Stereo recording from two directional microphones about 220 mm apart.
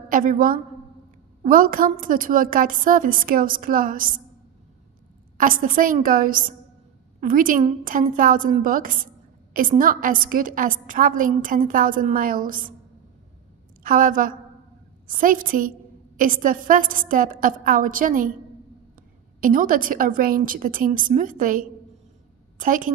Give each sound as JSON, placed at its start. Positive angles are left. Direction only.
{"t": 0.1, "sound": "a woman's voice", "side_deg": -40}
{"t": 5.4, "sound": "a woman's voice", "side_deg": -40}
{"t": 13.8, "sound": "a woman's voice", "side_deg": -40}
{"t": 19.4, "sound": "a woman's voice", "side_deg": -40}